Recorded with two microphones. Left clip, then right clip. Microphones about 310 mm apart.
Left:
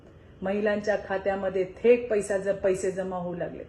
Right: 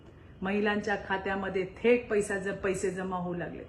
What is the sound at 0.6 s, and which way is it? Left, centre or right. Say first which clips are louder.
A woman's voice: left 4 dB; centre.